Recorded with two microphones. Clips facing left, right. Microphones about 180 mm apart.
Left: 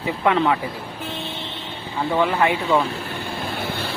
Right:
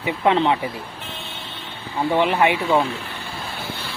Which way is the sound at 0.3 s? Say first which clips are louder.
Right 1 dB; 25° right (ahead or behind).